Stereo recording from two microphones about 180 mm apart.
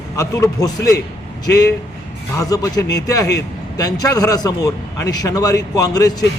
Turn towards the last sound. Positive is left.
turn(degrees=20)  # may be behind; listen again after turning